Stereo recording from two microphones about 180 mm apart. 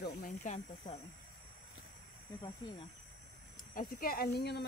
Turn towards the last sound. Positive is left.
turn(degrees=60)  # may be behind; listen again after turning